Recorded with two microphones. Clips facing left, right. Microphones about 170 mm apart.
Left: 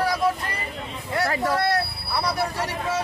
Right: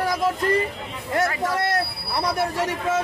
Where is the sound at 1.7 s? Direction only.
50° right (ahead or behind).